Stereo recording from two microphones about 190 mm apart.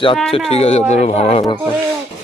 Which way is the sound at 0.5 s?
30° left (ahead or behind).